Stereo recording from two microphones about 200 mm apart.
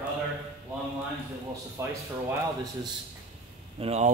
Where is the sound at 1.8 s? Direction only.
15° right (ahead or behind).